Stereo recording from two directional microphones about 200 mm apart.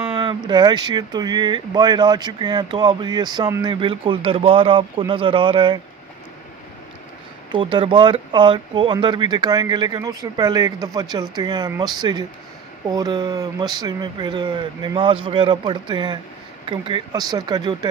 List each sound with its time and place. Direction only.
0.1 s speech: 25° right (ahead or behind)
7.5 s speech: 25° right (ahead or behind)